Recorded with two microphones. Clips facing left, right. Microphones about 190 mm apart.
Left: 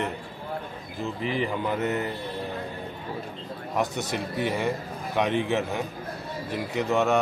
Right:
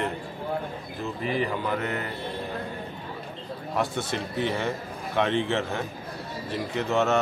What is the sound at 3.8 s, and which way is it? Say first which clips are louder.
Speech: left 1 dB; 15° left (ahead or behind).